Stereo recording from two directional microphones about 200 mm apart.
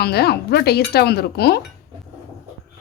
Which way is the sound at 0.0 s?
55° left (ahead or behind).